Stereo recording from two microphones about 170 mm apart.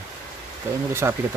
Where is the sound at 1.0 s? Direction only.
15° right (ahead or behind).